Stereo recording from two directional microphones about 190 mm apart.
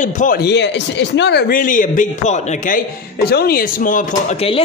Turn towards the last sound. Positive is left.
turn(degrees=30)  # may be behind; listen again after turning